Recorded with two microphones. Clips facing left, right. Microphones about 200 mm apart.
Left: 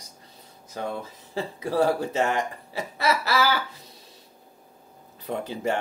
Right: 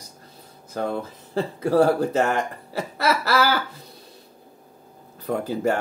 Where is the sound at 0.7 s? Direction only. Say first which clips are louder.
Right 5 dB; 45° right (ahead or behind).